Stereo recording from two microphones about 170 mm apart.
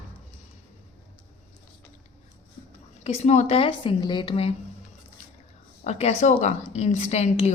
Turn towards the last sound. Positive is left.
turn(degrees=40)  # may be behind; listen again after turning